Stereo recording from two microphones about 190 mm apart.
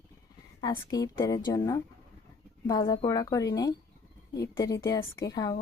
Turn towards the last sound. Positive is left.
turn(degrees=20)  # may be behind; listen again after turning